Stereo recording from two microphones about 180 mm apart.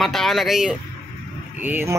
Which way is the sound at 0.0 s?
Centre (ahead or behind).